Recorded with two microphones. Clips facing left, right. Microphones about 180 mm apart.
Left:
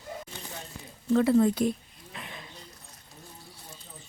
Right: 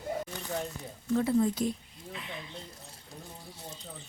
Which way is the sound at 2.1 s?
50° left (ahead or behind).